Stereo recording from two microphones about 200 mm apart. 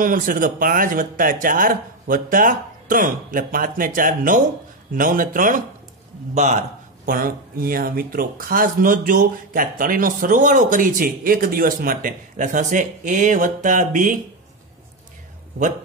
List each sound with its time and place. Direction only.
0.0 s a man's voice: 45° right (ahead or behind)